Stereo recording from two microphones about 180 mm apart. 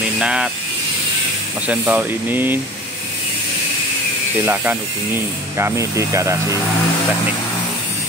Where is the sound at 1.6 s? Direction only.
10° right (ahead or behind).